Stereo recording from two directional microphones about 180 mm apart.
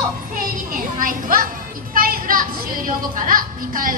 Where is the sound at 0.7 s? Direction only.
50° right (ahead or behind).